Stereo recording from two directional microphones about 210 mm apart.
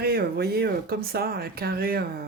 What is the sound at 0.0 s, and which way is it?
Speech, 50° right (ahead or behind).